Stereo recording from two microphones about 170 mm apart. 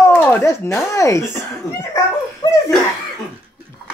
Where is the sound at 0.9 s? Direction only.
15° left (ahead or behind).